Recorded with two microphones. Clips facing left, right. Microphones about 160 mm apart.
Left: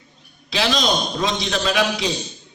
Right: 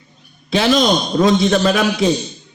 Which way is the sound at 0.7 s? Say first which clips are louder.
Right 7 dB; 50° right (ahead or behind).